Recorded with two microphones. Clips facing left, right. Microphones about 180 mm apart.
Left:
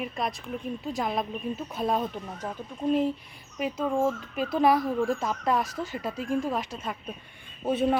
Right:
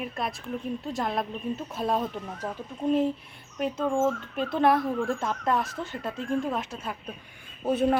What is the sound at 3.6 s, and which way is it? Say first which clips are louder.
A woman's voice: right 1 dB; 5° left (ahead or behind).